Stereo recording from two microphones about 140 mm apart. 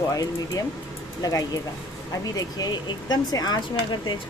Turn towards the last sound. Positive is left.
turn(degrees=30)  # may be behind; listen again after turning